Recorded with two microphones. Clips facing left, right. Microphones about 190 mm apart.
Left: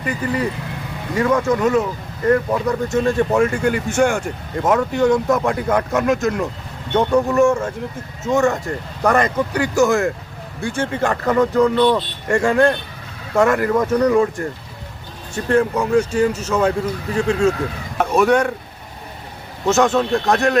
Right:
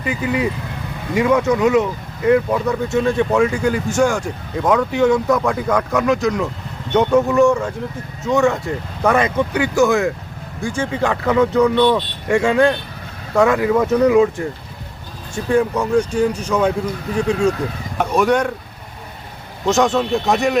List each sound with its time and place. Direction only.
0.0 s speech: 5° right (ahead or behind)
9.0 s speech: 5° right (ahead or behind)
10.6 s speech: 60° left (ahead or behind)
10.9 s speech: 5° right (ahead or behind)
19.6 s speech: centre (ahead or behind)